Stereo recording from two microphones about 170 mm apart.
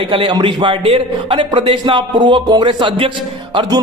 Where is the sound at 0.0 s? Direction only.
30° right (ahead or behind).